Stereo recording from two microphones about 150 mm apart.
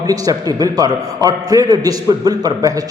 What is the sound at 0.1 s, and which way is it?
A man's voice, 25° right (ahead or behind).